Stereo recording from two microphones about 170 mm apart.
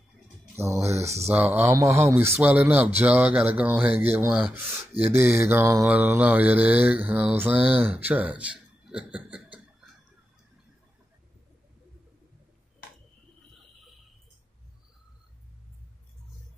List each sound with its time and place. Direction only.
0.6 s speech: 15° right (ahead or behind)
1.0 s mantra: 15° right (ahead or behind)
4.3 s speech: 5° right (ahead or behind)
5.0 s mantra: 15° right (ahead or behind)